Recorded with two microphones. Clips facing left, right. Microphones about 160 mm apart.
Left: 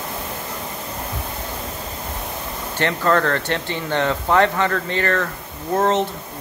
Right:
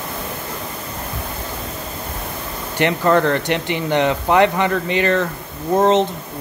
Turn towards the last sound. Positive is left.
turn(degrees=-20)  # may be behind; listen again after turning